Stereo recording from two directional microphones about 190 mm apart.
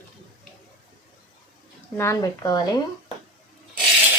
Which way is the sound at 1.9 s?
15° left (ahead or behind).